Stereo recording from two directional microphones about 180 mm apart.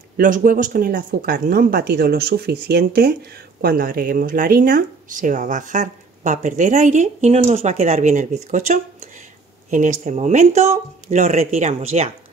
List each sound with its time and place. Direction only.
0.2 s speech: 50° right (ahead or behind)